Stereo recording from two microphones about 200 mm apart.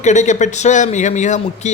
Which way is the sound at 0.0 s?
35° left (ahead or behind).